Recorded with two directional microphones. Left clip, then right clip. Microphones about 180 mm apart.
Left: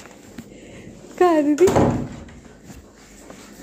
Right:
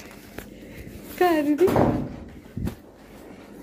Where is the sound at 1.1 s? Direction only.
30° left (ahead or behind).